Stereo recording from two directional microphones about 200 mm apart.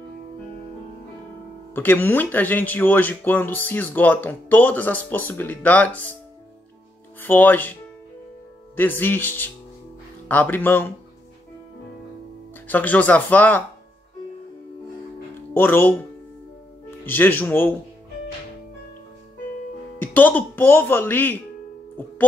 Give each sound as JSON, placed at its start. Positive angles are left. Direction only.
{"t": 1.8, "sound": "speech", "side_deg": 10}
{"t": 7.2, "sound": "speech", "side_deg": 10}
{"t": 8.7, "sound": "speech", "side_deg": 10}
{"t": 12.6, "sound": "speech", "side_deg": 10}
{"t": 15.5, "sound": "speech", "side_deg": 10}
{"t": 20.0, "sound": "speech", "side_deg": 10}